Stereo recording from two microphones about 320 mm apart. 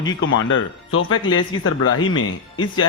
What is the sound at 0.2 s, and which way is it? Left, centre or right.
A man's voice, left.